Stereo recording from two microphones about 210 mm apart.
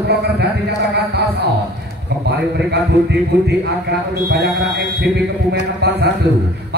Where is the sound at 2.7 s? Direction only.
55° right (ahead or behind).